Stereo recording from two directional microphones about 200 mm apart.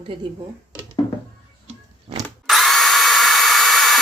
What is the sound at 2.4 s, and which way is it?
Drill, centre (ahead or behind).